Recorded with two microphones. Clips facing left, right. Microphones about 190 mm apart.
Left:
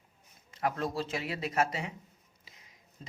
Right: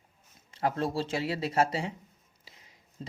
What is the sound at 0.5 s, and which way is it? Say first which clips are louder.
Speech: right 3 dB; 30° right (ahead or behind).